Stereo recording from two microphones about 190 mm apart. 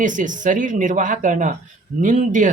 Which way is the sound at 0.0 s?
40° right (ahead or behind).